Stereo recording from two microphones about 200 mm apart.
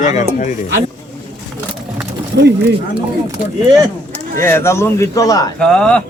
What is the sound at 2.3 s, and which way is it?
Speech, 55° right (ahead or behind).